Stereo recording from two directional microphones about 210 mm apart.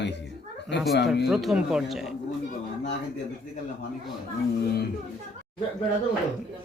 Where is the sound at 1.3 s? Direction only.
Centre (ahead or behind).